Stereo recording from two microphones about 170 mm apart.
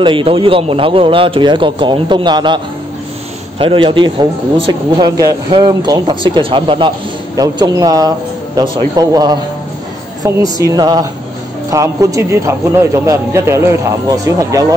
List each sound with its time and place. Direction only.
0.0 s speech: 30° right (ahead or behind)